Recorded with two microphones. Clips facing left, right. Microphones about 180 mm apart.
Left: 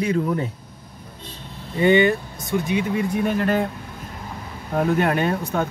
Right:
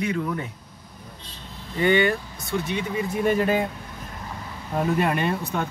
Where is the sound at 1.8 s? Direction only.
20° left (ahead or behind).